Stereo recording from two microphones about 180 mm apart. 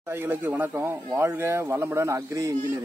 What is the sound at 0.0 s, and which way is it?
A man's voice, 15° right (ahead or behind).